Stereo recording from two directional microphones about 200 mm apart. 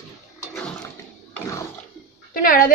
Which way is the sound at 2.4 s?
45° left (ahead or behind).